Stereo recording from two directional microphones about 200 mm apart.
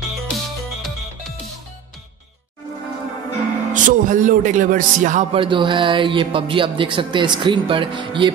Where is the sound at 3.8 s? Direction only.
40° right (ahead or behind).